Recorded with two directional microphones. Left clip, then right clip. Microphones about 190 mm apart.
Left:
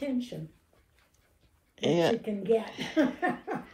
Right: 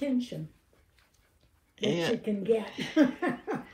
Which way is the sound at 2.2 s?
35° right (ahead or behind).